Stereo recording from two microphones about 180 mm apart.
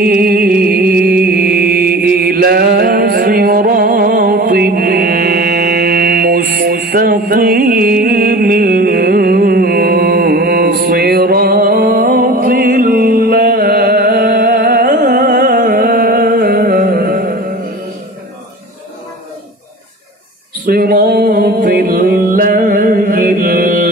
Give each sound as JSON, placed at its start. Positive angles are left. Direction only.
{"t": 0.0, "sound": "music", "side_deg": -55}
{"t": 20.6, "sound": "music", "side_deg": -60}